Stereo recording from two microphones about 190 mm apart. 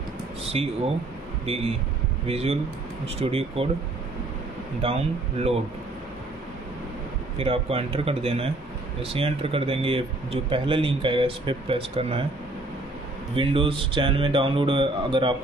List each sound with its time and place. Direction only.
0.5 s speech: 30° right (ahead or behind)
4.8 s speech: 30° right (ahead or behind)
7.3 s speech: 30° right (ahead or behind)
13.3 s speech: 30° right (ahead or behind)